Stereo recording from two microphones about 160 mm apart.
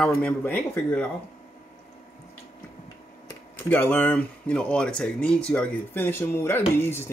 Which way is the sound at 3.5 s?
10° left (ahead or behind).